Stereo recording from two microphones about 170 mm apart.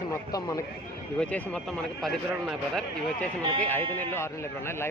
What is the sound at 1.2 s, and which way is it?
A man's voice, 5° left (ahead or behind).